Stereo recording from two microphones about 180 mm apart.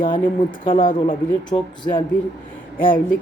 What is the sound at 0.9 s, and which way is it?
Speech, 50° left (ahead or behind).